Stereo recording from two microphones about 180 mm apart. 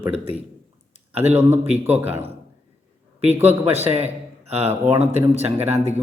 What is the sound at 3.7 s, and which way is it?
Speech, 35° right (ahead or behind).